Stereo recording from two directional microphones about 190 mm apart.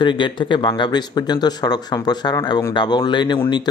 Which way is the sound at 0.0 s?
25° left (ahead or behind).